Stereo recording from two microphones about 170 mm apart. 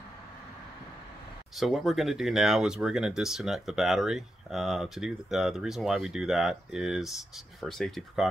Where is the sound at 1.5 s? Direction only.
Centre (ahead or behind).